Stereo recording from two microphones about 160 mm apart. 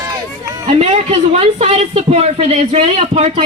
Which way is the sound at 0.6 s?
40° right (ahead or behind).